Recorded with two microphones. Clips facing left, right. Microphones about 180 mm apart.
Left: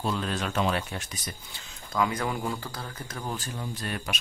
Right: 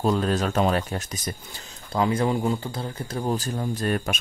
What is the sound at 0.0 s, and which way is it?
Speech, 40° right (ahead or behind).